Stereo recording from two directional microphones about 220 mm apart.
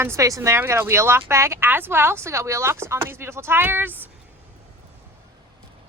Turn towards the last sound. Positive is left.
turn(degrees=-10)  # may be behind; listen again after turning